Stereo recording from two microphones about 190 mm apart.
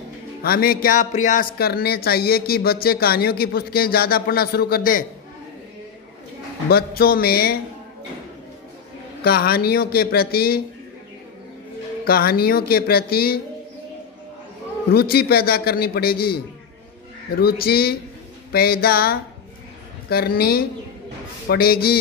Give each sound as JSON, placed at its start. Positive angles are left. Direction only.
{"t": 0.4, "sound": "speech", "side_deg": 50}
{"t": 6.7, "sound": "speech", "side_deg": 55}
{"t": 9.2, "sound": "speech", "side_deg": 55}
{"t": 12.1, "sound": "speech", "side_deg": 50}
{"t": 14.9, "sound": "a man's voice", "side_deg": 55}
{"t": 17.4, "sound": "a man's voice", "side_deg": 55}